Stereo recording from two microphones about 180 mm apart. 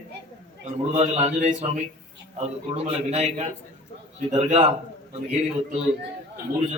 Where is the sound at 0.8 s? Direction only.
35° right (ahead or behind).